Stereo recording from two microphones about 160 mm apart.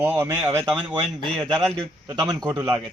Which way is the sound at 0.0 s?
15° right (ahead or behind).